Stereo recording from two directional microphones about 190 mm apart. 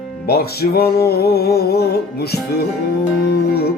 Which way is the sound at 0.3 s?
55° left (ahead or behind).